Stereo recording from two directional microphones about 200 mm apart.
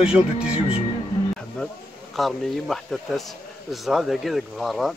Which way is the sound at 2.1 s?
Centre (ahead or behind).